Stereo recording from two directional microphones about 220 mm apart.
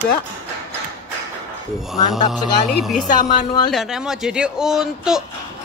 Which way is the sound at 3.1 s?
35° left (ahead or behind).